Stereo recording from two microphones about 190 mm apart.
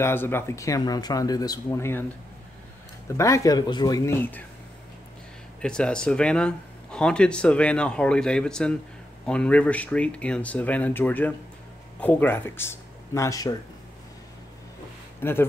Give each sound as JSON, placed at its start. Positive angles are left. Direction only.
{"t": 0.0, "sound": "speech", "side_deg": 10}
{"t": 3.2, "sound": "speech", "side_deg": 15}
{"t": 5.6, "sound": "speech", "side_deg": 5}
{"t": 15.1, "sound": "speech", "side_deg": 10}